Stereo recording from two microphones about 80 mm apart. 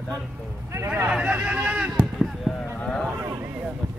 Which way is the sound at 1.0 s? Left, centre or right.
Centre.